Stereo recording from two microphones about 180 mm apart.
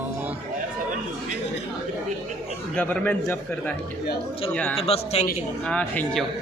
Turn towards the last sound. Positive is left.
turn(degrees=5)  # may be behind; listen again after turning